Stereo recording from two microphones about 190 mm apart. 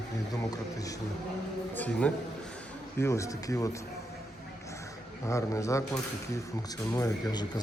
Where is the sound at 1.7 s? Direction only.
5° left (ahead or behind).